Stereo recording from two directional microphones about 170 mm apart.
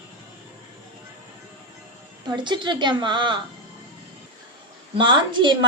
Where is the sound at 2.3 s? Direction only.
25° right (ahead or behind).